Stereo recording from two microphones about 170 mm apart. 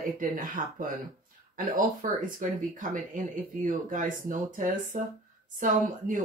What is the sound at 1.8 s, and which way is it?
Speech, 50° right (ahead or behind).